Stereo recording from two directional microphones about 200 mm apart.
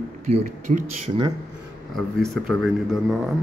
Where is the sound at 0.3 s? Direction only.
35° right (ahead or behind).